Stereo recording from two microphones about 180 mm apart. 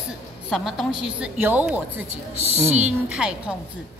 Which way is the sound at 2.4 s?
35° right (ahead or behind).